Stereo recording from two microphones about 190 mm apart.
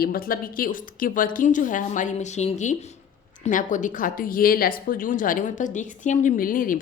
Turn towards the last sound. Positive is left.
turn(degrees=45)  # may be behind; listen again after turning